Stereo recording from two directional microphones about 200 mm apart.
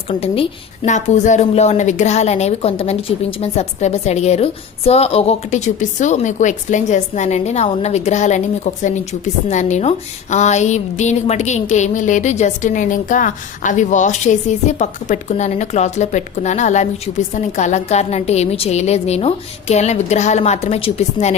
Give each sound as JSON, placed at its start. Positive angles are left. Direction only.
{"t": 0.1, "sound": "a woman's voice", "side_deg": 30}